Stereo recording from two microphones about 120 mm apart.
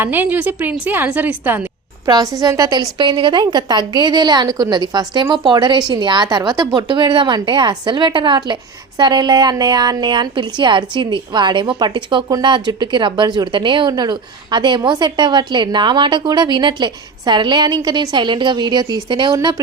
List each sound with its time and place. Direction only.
0.0 s a woman's voice: 15° right (ahead or behind)
2.0 s a woman's voice: 30° right (ahead or behind)